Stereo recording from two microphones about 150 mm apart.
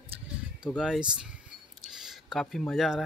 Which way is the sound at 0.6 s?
5° right (ahead or behind).